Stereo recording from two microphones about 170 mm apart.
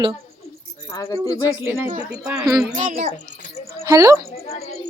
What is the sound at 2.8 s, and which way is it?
Speech, 50° right (ahead or behind).